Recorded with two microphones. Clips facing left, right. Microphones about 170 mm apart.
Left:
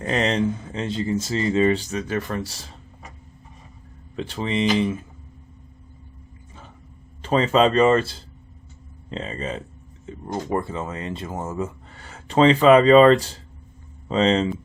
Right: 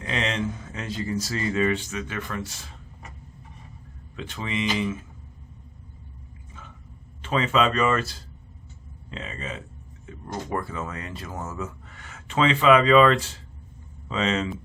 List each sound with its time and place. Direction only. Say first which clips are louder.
0.0 s speech: left 6 dB; 40° left (ahead or behind)
4.1 s speech: left 6 dB; 35° left (ahead or behind)
7.2 s speech: left 5 dB; 35° left (ahead or behind)